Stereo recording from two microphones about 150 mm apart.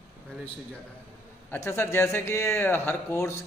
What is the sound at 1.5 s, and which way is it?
A man's voice, 15° left (ahead or behind).